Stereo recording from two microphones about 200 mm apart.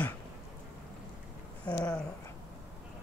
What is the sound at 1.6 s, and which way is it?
Speech, 5° left (ahead or behind).